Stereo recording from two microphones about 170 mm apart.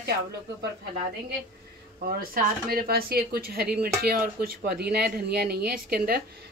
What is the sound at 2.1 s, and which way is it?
Speech, 60° right (ahead or behind).